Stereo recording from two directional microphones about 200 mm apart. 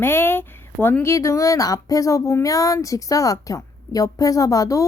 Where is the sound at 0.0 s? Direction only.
10° left (ahead or behind).